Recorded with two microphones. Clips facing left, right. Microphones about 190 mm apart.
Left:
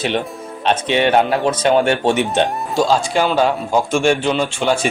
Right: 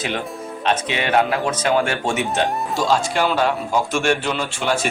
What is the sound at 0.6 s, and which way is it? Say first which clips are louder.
A man's voice: left 6 dB; 30° left (ahead or behind).